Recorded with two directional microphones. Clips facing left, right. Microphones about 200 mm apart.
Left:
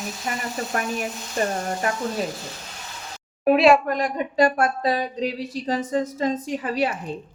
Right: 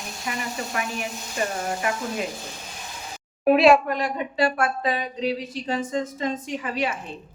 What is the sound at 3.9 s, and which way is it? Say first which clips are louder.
A woman's voice: left 2 dB; 45° left (ahead or behind).